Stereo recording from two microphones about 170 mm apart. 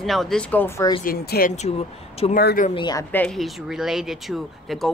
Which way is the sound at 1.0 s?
65° left (ahead or behind).